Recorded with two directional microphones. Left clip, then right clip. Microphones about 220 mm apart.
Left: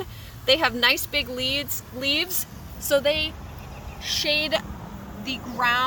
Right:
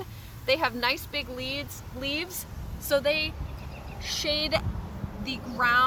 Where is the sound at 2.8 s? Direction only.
30° left (ahead or behind).